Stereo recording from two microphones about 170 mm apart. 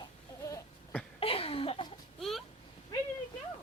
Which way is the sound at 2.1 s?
Centre (ahead or behind).